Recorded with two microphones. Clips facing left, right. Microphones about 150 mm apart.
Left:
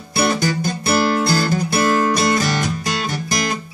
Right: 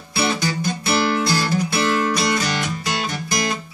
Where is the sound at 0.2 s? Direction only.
45° left (ahead or behind).